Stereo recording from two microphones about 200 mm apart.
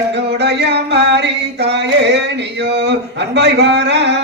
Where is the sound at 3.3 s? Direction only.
60° right (ahead or behind).